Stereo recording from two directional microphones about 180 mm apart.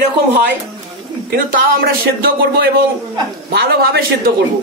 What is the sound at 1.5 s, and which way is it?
Speech, 55° right (ahead or behind).